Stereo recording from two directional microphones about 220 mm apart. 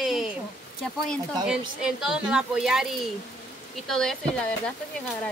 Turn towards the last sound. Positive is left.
turn(degrees=5)  # may be behind; listen again after turning